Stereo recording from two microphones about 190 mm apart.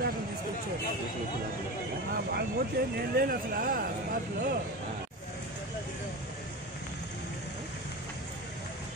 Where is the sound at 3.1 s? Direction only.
50° right (ahead or behind).